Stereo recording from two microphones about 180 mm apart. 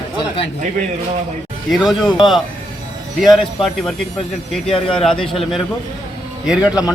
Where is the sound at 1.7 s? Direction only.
Centre (ahead or behind).